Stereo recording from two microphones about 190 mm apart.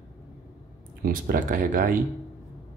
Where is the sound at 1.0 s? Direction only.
45° right (ahead or behind).